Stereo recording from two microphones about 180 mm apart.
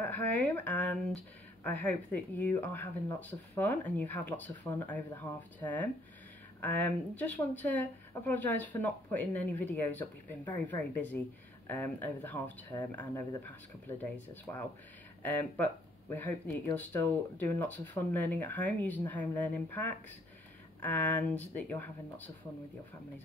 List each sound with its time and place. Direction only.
0.0 s speech: 10° left (ahead or behind)